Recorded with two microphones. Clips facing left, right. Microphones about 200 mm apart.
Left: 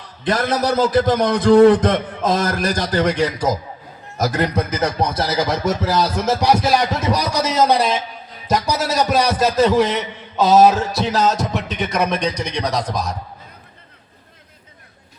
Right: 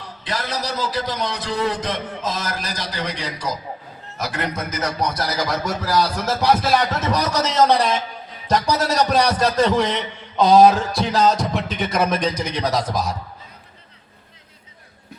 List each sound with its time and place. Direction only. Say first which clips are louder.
0.3 s a man's voice: left 8 dB; 50° left (ahead or behind)
4.2 s a man's voice: left 7 dB; 40° left (ahead or behind); by 13.1 s 5° right (ahead or behind)